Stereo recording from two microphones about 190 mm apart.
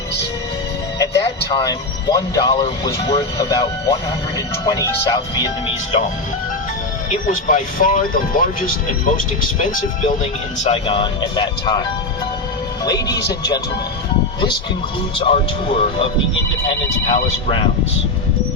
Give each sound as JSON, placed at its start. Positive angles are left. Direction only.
{"t": 1.5, "sound": "speech", "side_deg": 20}
{"t": 7.1, "sound": "speech", "side_deg": 40}
{"t": 10.6, "sound": "speech", "side_deg": 30}
{"t": 12.8, "sound": "speech", "side_deg": 20}
{"t": 15.2, "sound": "speech", "side_deg": 30}